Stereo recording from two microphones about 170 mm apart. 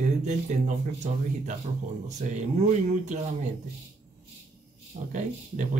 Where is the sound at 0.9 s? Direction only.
45° right (ahead or behind).